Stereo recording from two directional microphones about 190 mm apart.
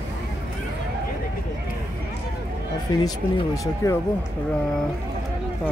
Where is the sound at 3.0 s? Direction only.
20° left (ahead or behind).